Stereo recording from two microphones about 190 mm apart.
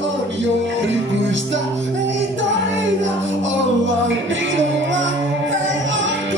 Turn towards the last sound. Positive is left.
turn(degrees=-75)  # may be behind; listen again after turning